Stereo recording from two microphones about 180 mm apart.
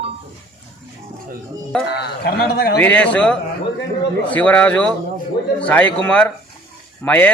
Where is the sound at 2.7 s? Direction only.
10° left (ahead or behind).